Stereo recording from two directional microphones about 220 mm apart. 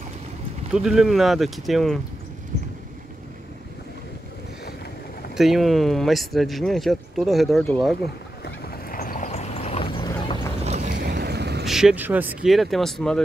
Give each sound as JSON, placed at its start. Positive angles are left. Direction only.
{"t": 0.7, "sound": "speech", "side_deg": 0}
{"t": 5.3, "sound": "speech", "side_deg": 0}
{"t": 8.5, "sound": "horse", "side_deg": 45}
{"t": 10.6, "sound": "a sound", "side_deg": -30}
{"t": 11.0, "sound": "a sound", "side_deg": -50}
{"t": 11.6, "sound": "speech", "side_deg": 0}